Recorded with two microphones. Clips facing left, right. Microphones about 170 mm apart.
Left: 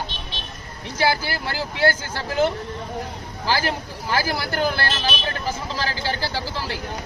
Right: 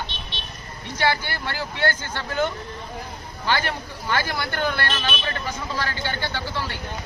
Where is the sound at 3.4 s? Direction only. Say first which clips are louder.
Left 1 dB; 35° left (ahead or behind).